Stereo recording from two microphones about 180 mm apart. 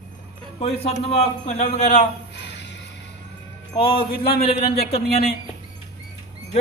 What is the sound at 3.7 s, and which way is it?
Speech, 30° left (ahead or behind).